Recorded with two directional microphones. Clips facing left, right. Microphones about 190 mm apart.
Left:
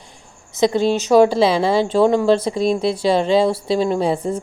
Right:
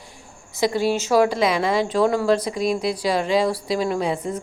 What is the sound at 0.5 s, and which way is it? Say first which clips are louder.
A woman's voice: left 4 dB; 20° left (ahead or behind).